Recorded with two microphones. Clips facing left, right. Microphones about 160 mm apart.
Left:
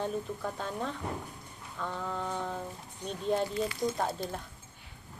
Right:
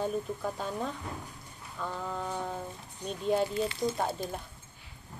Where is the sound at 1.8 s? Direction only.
5° right (ahead or behind).